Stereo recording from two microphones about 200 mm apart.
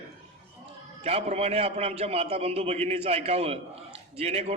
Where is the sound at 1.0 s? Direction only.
30° right (ahead or behind).